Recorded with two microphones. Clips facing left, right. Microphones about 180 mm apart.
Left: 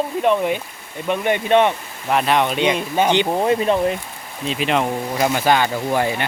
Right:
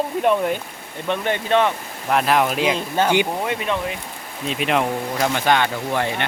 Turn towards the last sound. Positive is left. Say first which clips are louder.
# left 3 dB
turn(degrees=5)  # may be behind; listen again after turning